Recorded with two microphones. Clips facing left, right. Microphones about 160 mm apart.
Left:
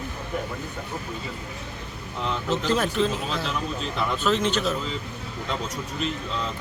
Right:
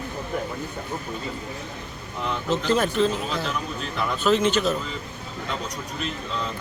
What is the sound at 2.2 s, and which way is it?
Speech, centre (ahead or behind).